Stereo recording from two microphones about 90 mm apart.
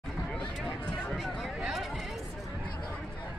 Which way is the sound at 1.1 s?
5° right (ahead or behind).